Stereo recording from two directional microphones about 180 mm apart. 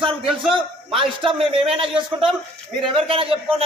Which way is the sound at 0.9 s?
30° right (ahead or behind).